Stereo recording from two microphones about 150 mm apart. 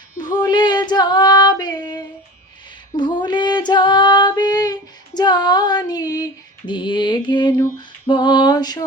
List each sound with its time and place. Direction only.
0.3 s female singing: 30° left (ahead or behind)